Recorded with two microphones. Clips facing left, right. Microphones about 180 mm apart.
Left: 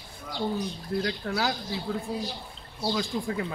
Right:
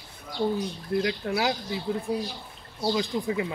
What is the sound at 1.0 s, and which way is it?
Speech, 20° right (ahead or behind).